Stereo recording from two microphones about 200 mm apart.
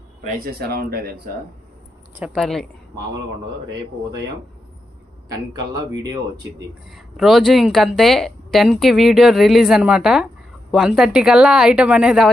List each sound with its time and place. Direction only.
0.3 s speech: 50° right (ahead or behind)
2.1 s a woman's voice: 5° right (ahead or behind)
5.3 s speech: 20° right (ahead or behind)
6.9 s a woman's voice: centre (ahead or behind)